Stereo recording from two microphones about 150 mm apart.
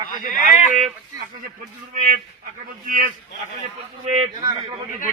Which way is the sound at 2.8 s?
65° right (ahead or behind).